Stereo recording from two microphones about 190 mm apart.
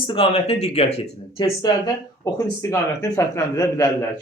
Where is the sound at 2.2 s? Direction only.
15° left (ahead or behind).